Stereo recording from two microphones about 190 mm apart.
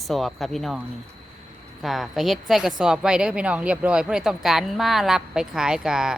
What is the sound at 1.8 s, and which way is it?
A woman's voice, centre (ahead or behind).